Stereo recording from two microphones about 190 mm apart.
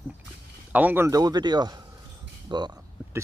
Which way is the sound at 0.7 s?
10° right (ahead or behind).